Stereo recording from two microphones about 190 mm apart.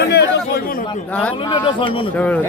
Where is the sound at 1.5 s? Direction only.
25° left (ahead or behind).